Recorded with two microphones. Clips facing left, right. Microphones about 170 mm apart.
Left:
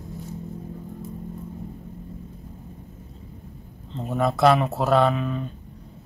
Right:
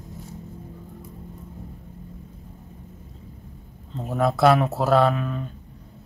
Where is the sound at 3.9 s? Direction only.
5° right (ahead or behind).